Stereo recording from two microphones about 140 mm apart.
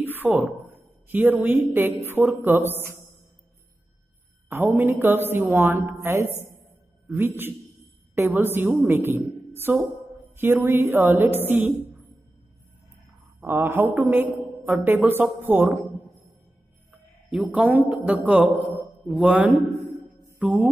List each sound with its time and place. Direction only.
0.0 s a sound: 15° right (ahead or behind)
0.4 s a woman's voice: 10° right (ahead or behind)
4.5 s a woman's voice: 15° right (ahead or behind)
13.5 s a woman's voice: 15° right (ahead or behind)
17.3 s a woman's voice: 10° right (ahead or behind)
20.3 s music: centre (ahead or behind)